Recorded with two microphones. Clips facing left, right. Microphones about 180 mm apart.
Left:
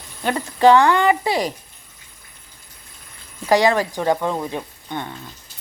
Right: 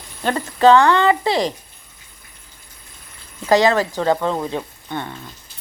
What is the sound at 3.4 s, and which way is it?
Speech, 15° left (ahead or behind).